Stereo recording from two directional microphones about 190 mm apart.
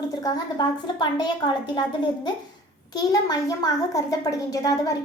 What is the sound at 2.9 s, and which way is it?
A child's voice, 20° left (ahead or behind).